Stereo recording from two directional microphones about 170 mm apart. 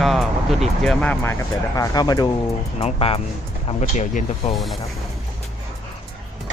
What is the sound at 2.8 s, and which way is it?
Speech, 35° left (ahead or behind).